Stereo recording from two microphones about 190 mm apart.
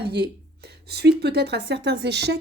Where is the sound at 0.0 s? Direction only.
60° right (ahead or behind).